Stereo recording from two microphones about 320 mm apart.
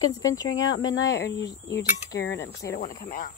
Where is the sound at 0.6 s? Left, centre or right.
Left.